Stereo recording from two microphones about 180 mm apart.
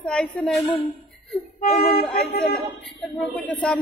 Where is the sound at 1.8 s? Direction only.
55° left (ahead or behind).